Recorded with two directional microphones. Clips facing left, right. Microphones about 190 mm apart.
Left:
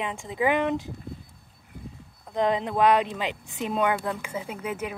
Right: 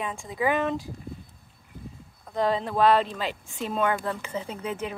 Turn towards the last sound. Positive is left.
turn(degrees=10)  # may be behind; listen again after turning